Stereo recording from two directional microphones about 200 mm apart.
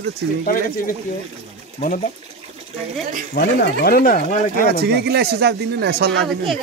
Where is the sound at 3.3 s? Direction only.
55° left (ahead or behind).